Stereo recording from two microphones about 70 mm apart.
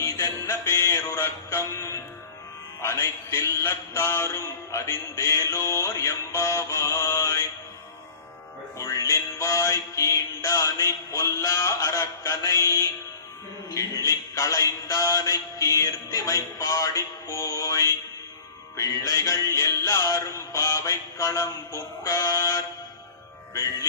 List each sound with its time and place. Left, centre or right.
0.0 s music: left
1.2 s speech: left
2.9 s music: left
3.6 s mantra: left
4.7 s music: left
5.5 s music: left
8.8 s music: left